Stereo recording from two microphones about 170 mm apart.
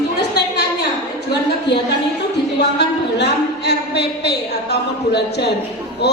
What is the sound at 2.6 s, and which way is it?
A woman's voice, 80° left.